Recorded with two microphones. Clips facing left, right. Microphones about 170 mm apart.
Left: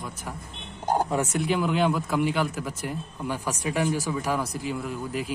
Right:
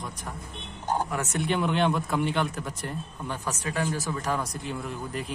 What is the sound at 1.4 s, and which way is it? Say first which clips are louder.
A man's voice: right 1 dB; centre (ahead or behind).